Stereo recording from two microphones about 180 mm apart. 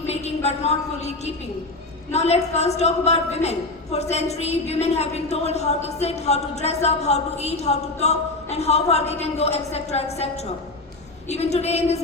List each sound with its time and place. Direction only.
0.1 s a woman's voice: 35° left (ahead or behind)